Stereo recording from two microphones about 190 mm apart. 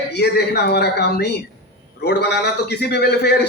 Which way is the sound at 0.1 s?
60° left (ahead or behind).